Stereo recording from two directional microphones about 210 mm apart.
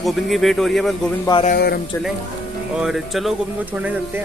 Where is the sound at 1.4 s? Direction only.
45° left (ahead or behind).